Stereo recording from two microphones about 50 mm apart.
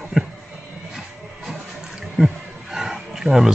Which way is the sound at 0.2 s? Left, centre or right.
Centre.